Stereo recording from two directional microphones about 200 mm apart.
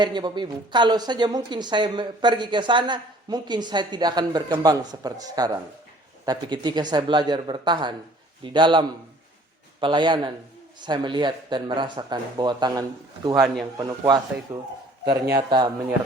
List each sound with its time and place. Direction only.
0.0 s a woman's voice: 20° right (ahead or behind)
13.3 s a man's voice: centre (ahead or behind)
13.7 s a woman's voice: 20° right (ahead or behind)